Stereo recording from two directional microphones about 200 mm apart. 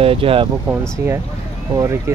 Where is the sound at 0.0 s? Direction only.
30° right (ahead or behind).